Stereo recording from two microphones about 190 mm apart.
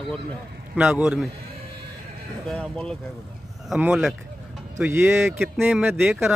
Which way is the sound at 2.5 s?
Centre (ahead or behind).